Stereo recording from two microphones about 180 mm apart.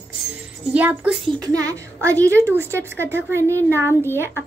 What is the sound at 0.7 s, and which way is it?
A woman's voice, 10° right (ahead or behind).